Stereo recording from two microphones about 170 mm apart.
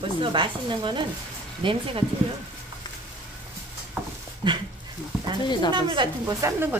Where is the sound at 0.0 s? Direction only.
30° right (ahead or behind).